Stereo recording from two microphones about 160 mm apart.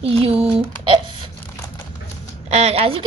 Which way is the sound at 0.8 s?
30° right (ahead or behind).